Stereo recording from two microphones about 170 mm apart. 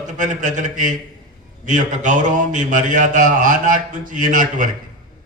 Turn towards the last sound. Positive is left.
turn(degrees=-50)  # may be behind; listen again after turning